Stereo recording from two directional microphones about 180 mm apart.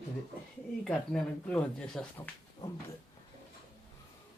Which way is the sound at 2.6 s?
20° left (ahead or behind).